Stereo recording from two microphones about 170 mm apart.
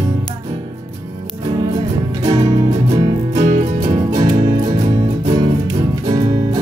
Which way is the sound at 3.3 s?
45° right (ahead or behind).